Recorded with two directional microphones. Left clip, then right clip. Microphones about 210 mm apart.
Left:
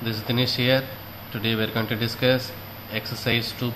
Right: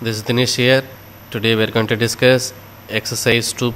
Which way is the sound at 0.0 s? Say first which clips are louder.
Right 7 dB; 55° right (ahead or behind).